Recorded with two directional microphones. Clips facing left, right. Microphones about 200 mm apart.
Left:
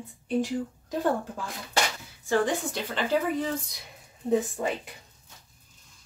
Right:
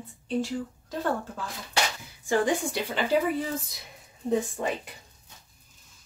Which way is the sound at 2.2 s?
15° right (ahead or behind).